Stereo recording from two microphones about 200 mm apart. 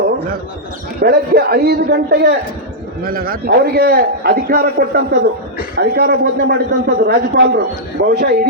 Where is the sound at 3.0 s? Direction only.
45° right (ahead or behind).